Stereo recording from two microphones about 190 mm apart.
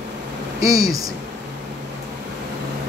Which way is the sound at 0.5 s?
20° right (ahead or behind).